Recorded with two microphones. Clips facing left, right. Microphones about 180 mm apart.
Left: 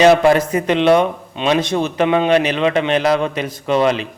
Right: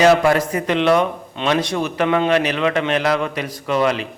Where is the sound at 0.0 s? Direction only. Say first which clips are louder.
Left 3 dB; 20° left (ahead or behind).